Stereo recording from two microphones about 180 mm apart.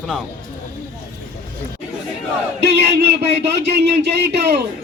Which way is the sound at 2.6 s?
65° right (ahead or behind).